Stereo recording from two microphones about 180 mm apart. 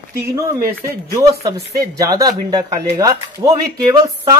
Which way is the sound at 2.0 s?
20° right (ahead or behind).